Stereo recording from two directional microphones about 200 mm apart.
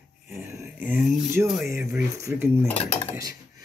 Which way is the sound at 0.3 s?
15° right (ahead or behind).